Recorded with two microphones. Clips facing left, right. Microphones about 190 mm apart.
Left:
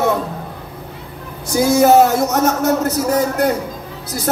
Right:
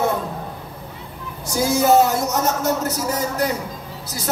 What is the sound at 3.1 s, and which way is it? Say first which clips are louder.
Speech: left 7 dB; 55° left (ahead or behind).